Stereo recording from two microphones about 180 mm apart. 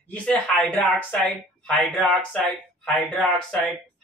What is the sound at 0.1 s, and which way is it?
Speech, 5° left (ahead or behind).